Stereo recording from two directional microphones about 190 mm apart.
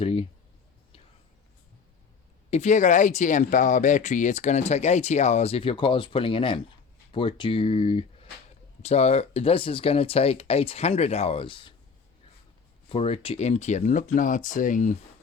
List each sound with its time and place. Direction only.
0.0 s speech: 30° left (ahead or behind)
2.5 s speech: 40° left (ahead or behind)
12.9 s speech: 30° left (ahead or behind)